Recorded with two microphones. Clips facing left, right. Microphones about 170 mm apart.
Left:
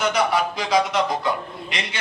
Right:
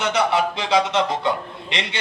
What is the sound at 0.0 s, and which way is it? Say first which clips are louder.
A man's voice: right 1 dB; 25° right (ahead or behind).